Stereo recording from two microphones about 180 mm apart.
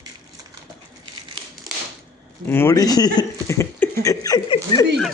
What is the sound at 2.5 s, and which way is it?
Speech, 15° left (ahead or behind).